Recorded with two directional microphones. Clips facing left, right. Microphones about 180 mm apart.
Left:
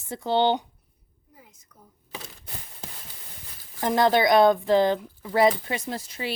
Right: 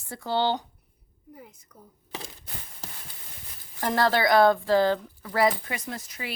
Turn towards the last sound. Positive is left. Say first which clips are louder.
# left 5 dB
turn(degrees=30)  # may be behind; listen again after turning